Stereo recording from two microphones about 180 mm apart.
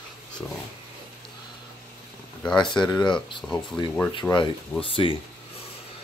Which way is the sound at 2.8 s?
25° left (ahead or behind).